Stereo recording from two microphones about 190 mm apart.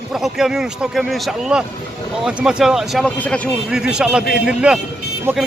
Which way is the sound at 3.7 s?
5° right (ahead or behind).